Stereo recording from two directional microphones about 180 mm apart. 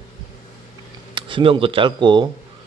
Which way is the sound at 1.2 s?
30° right (ahead or behind).